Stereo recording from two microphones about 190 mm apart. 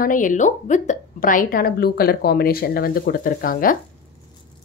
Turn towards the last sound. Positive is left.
turn(degrees=50)  # may be behind; listen again after turning